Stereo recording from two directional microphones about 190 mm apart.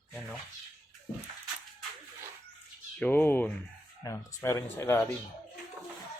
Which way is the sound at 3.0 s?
10° left (ahead or behind).